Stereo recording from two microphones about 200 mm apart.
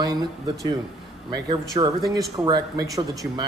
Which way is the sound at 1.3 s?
20° right (ahead or behind).